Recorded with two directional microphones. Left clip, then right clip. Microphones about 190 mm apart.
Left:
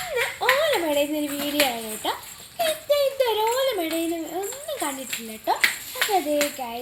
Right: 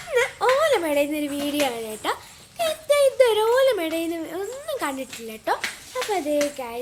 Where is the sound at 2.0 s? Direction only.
25° right (ahead or behind).